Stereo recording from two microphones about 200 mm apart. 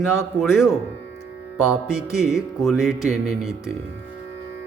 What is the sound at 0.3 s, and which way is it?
Music, centre (ahead or behind).